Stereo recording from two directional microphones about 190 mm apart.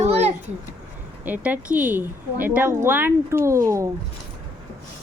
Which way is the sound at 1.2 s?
10° right (ahead or behind).